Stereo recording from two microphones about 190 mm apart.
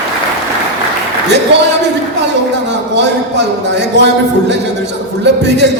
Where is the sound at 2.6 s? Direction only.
65° right (ahead or behind).